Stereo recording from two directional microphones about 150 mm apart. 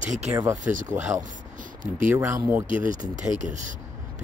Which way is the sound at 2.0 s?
20° right (ahead or behind).